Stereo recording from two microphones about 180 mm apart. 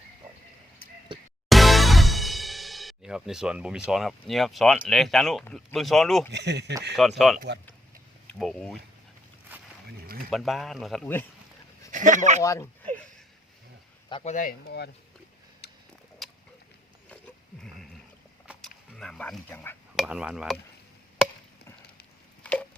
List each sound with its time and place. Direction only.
1.5 s music: centre (ahead or behind)
3.8 s speech: centre (ahead or behind)
6.3 s speech: 70° right (ahead or behind)
6.9 s speech: centre (ahead or behind)
8.4 s speech: centre (ahead or behind)
9.5 s a sound: 10° right (ahead or behind)
10.2 s speech: centre (ahead or behind)
11.9 s speech: 45° right (ahead or behind)
12.4 s speech: 15° left (ahead or behind)
14.1 s speech: 30° left (ahead or behind)
14.3 s speech: 55° left (ahead or behind)
15.6 s tick-tock: 65° left (ahead or behind)
18.4 s a sound: centre (ahead or behind)
20.0 s speech: 5° right (ahead or behind)